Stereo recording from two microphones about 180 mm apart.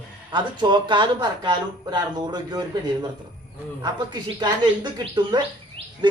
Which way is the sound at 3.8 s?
25° right (ahead or behind).